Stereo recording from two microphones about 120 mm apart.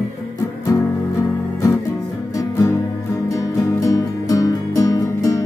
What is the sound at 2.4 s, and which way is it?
Music, 30° left (ahead or behind).